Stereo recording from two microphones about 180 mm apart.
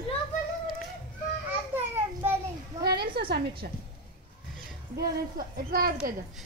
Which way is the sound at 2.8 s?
60° right (ahead or behind).